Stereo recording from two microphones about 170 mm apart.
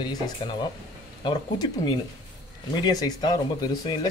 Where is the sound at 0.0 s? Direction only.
25° left (ahead or behind).